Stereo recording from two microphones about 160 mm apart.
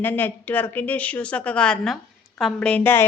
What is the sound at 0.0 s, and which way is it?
A woman's voice, 10° left (ahead or behind).